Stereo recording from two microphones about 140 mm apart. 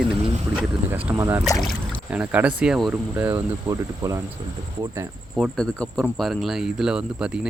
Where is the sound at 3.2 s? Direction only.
15° right (ahead or behind).